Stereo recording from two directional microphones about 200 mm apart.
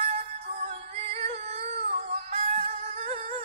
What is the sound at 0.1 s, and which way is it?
Music, 30° right (ahead or behind).